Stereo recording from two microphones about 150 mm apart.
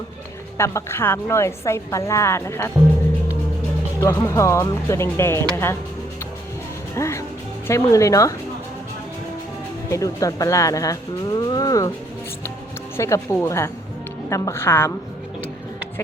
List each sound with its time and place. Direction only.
0.5 s a woman's voice: 20° left (ahead or behind)
4.0 s speech: 20° left (ahead or behind)
6.9 s music: 20° left (ahead or behind)
7.7 s a woman's voice: 20° left (ahead or behind)
9.9 s speech: 20° left (ahead or behind)
13.0 s a woman's voice: 20° left (ahead or behind)